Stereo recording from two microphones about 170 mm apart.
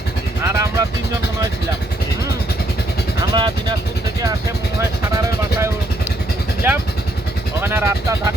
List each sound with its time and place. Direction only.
0.4 s vehicle: 15° right (ahead or behind)
3.3 s vehicle: 25° right (ahead or behind)
5.1 s vehicle: 15° right (ahead or behind)
6.6 s speech: 15° right (ahead or behind)